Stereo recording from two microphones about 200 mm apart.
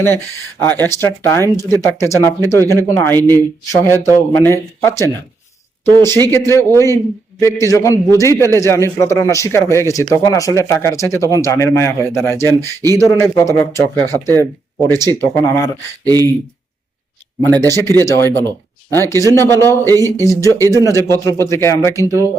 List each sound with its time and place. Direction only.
0.6 s speech: 10° left (ahead or behind)
16.0 s speech: 20° right (ahead or behind)
17.4 s speech: 10° left (ahead or behind)